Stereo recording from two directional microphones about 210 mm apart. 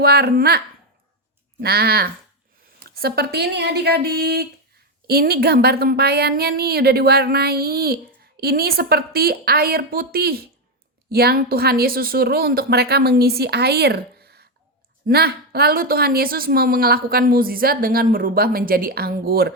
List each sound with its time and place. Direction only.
0.0 s speech: 50° right (ahead or behind)
1.6 s speech: 50° right (ahead or behind)